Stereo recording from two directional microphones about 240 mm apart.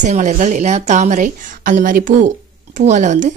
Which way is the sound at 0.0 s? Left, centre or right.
Right.